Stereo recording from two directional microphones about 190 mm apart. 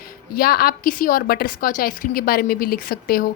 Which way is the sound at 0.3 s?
55° left (ahead or behind).